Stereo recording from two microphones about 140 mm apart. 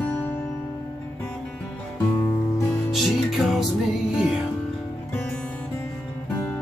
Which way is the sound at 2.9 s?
Centre (ahead or behind).